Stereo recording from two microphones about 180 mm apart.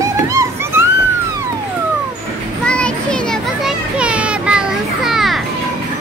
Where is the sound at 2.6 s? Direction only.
5° left (ahead or behind).